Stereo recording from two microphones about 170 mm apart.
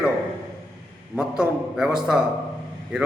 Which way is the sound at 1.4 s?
5° right (ahead or behind).